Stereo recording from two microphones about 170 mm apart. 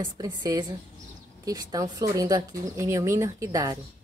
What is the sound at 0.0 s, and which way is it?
Speech, 20° right (ahead or behind).